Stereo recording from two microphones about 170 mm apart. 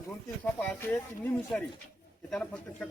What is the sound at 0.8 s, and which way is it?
Speech, 10° left (ahead or behind).